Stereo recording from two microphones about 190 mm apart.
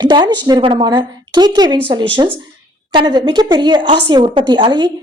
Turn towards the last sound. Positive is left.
turn(degrees=-25)  # may be behind; listen again after turning